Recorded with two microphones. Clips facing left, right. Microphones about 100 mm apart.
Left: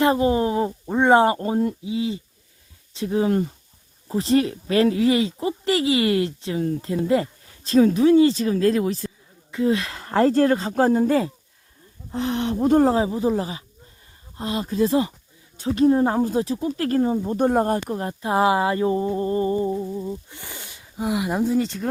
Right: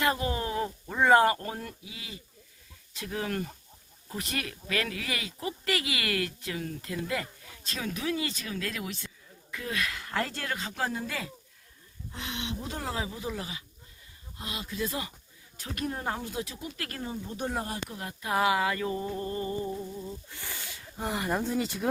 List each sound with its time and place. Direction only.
0.0 s speech: 25° left (ahead or behind)
9.5 s speech: 25° left (ahead or behind); by 12.9 s 50° left (ahead or behind)
12.9 s speech: 35° left (ahead or behind)
20.9 s speech: 5° left (ahead or behind)